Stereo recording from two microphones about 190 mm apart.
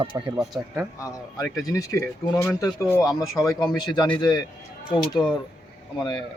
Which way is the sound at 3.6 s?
20° left (ahead or behind).